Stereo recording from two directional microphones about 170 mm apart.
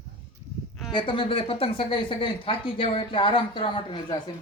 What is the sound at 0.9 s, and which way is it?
Speech, 30° left (ahead or behind).